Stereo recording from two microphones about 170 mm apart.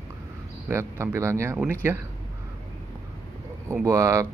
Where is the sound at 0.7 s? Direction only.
15° right (ahead or behind).